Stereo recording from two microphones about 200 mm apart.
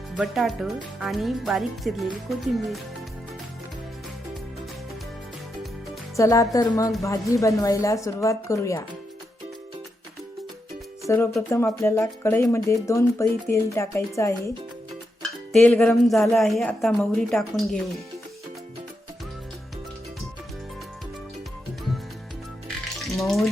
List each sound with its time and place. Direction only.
0.1 s a woman's voice: centre (ahead or behind)
6.1 s speech: 15° left (ahead or behind)
11.0 s speech: 15° left (ahead or behind)
15.5 s a woman's voice: 5° left (ahead or behind)
22.7 s frying: centre (ahead or behind)